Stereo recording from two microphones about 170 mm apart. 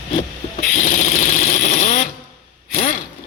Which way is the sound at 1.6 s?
50° left (ahead or behind).